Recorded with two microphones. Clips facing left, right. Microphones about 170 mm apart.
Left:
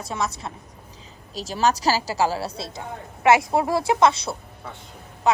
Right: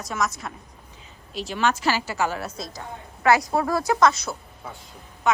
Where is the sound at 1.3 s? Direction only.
40° left (ahead or behind).